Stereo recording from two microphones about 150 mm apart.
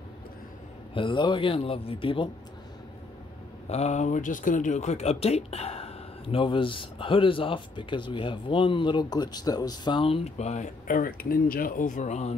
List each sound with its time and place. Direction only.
0.9 s a man's voice: 30° left (ahead or behind)
3.6 s speech: 45° left (ahead or behind)